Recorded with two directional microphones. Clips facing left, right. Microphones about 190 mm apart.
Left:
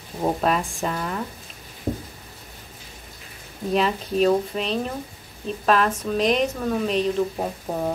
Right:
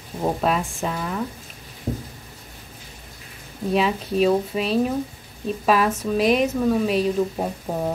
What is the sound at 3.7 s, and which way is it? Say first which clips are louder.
Speech: right 1 dB; 5° right (ahead or behind).